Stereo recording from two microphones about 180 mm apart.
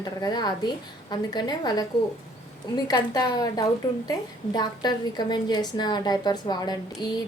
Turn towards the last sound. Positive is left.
turn(degrees=25)  # may be behind; listen again after turning